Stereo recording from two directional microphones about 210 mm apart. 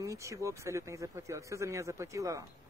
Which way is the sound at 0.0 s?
15° right (ahead or behind).